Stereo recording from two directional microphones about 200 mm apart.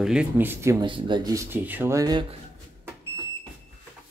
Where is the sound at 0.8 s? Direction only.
25° right (ahead or behind).